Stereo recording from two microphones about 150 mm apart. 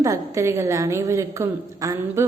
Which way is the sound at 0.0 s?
20° right (ahead or behind).